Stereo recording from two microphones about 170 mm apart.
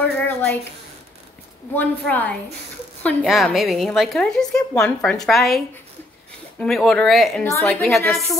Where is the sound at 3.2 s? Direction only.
Centre (ahead or behind).